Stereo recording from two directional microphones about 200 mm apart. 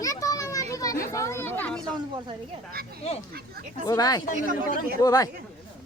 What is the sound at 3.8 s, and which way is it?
Speech, 20° left (ahead or behind).